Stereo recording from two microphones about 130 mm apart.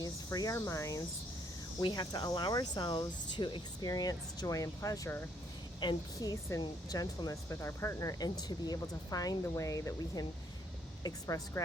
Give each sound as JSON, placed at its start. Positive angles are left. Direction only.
{"t": 0.0, "sound": "speech", "side_deg": 30}
{"t": 5.8, "sound": "speech", "side_deg": 30}